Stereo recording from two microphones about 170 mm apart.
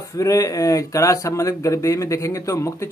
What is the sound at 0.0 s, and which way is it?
A man's voice, 20° left (ahead or behind).